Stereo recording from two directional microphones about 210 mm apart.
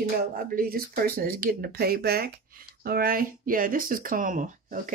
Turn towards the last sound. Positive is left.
turn(degrees=-40)  # may be behind; listen again after turning